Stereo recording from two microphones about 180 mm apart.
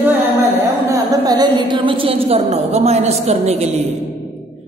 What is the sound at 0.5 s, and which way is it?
A woman's voice, 15° right (ahead or behind).